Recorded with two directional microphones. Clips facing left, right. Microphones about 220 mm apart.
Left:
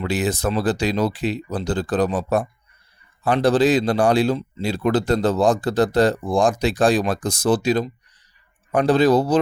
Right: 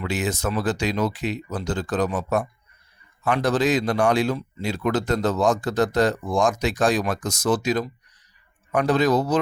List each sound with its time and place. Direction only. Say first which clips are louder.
0.0 s a man's voice: left 4 dB; 35° left (ahead or behind)